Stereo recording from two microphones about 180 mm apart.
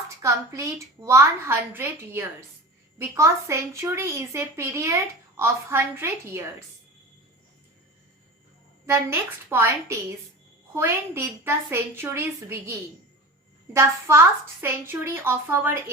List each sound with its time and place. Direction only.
0.2 s speech: 15° right (ahead or behind)
8.9 s speech: 15° right (ahead or behind)
13.7 s speech: 15° right (ahead or behind)